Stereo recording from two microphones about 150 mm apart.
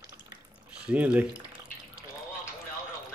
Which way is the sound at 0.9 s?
10° right (ahead or behind).